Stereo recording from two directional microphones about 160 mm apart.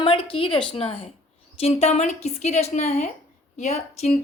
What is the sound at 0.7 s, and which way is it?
A woman's voice, 35° left (ahead or behind).